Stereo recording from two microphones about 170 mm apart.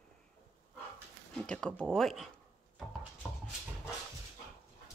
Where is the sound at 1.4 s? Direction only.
5° left (ahead or behind).